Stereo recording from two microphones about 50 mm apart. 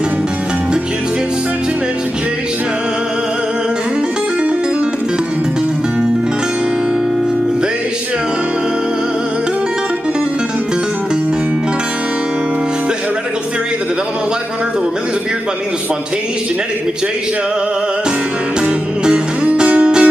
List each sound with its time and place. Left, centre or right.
19.0 s music: right